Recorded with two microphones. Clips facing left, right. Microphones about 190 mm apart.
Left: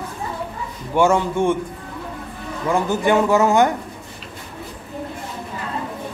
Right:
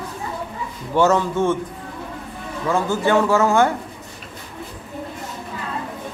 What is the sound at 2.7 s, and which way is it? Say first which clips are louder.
A man's voice: left 1 dB; 15° left (ahead or behind).